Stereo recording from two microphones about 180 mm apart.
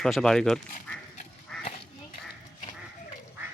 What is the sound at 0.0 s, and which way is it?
Speech, 5° left (ahead or behind).